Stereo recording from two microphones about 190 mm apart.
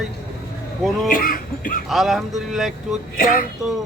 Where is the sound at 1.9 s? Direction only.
Centre (ahead or behind).